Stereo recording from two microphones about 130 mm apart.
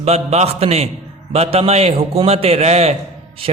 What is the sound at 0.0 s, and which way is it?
A man's voice, 55° right (ahead or behind).